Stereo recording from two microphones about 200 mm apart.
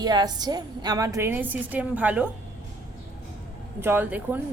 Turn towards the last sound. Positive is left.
turn(degrees=-10)  # may be behind; listen again after turning